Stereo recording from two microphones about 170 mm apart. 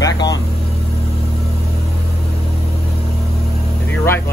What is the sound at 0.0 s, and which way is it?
Vehicle, 20° left (ahead or behind).